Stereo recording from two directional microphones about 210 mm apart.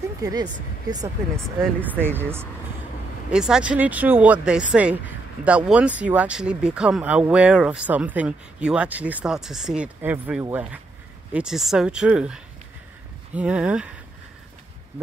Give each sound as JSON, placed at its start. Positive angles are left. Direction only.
{"t": 0.2, "sound": "speech", "side_deg": -15}
{"t": 1.8, "sound": "speech", "side_deg": -10}